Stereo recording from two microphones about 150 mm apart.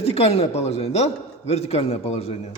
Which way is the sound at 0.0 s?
40° left (ahead or behind).